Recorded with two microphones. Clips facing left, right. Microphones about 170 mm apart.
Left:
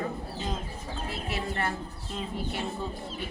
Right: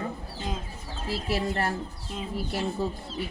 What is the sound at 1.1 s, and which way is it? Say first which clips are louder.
Speech: right 7 dB; 35° right (ahead or behind).